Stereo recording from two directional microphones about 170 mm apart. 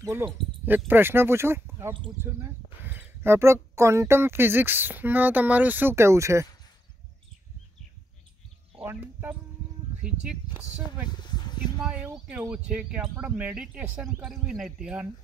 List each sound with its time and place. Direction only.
0.0 s speech: 15° right (ahead or behind)
8.7 s speech: 10° right (ahead or behind)
11.1 s a sound: 25° left (ahead or behind)
11.8 s speech: 5° right (ahead or behind)